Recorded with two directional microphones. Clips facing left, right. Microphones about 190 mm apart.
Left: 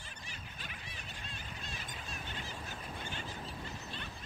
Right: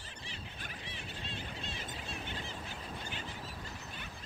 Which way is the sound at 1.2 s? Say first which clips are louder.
Right 5 dB; 25° right (ahead or behind).